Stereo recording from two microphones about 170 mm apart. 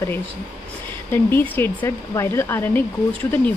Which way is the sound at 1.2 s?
15° left (ahead or behind).